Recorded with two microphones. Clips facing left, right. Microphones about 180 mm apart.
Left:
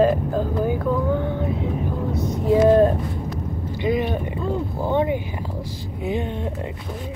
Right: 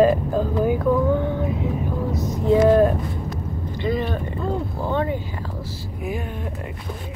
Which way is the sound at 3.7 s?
15° left (ahead or behind).